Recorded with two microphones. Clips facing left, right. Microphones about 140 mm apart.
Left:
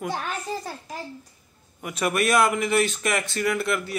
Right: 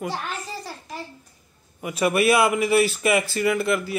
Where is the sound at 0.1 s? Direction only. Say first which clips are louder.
Left 2 dB; 50° left (ahead or behind).